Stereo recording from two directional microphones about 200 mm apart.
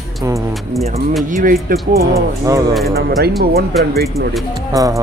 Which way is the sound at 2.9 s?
50° right (ahead or behind).